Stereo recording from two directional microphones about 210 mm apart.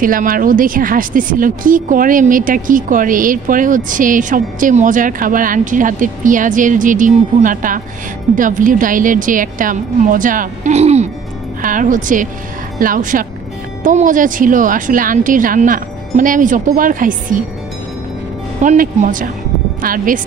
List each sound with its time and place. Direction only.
0.0 s speech: 40° right (ahead or behind)
18.6 s speech: 35° right (ahead or behind)